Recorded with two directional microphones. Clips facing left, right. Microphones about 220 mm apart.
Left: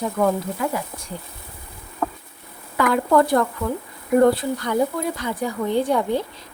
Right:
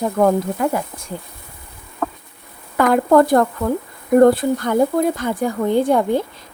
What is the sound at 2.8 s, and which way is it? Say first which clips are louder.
Speech: right 4 dB; 45° right (ahead or behind).